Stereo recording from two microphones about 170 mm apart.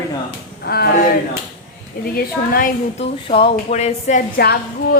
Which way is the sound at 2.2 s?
60° left (ahead or behind).